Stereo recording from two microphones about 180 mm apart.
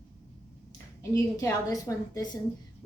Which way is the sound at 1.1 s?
15° left (ahead or behind).